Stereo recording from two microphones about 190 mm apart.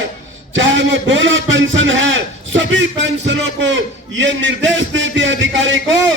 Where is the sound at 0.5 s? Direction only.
75° right (ahead or behind).